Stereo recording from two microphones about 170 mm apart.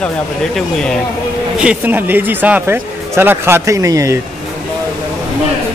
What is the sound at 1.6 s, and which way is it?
Speech, 10° right (ahead or behind).